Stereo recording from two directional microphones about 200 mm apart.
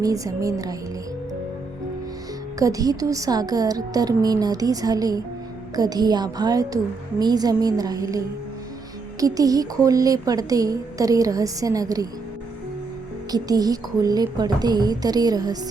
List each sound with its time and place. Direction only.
0.0 s a woman's voice: 15° right (ahead or behind)
2.6 s a woman's voice: 15° right (ahead or behind)
9.2 s a woman's voice: 20° right (ahead or behind)
13.3 s a woman's voice: 20° right (ahead or behind)